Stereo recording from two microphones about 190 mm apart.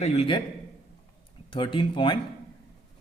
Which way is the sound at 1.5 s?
25° left (ahead or behind).